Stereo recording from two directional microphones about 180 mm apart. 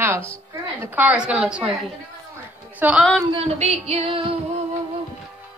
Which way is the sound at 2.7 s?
10° right (ahead or behind).